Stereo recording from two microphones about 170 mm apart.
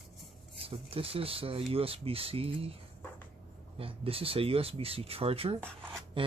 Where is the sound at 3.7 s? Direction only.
35° right (ahead or behind).